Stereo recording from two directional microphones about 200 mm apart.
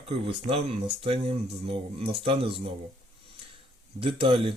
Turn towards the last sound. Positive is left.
turn(degrees=-25)  # may be behind; listen again after turning